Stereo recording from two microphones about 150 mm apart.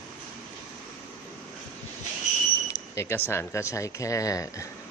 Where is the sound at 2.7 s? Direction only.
20° left (ahead or behind).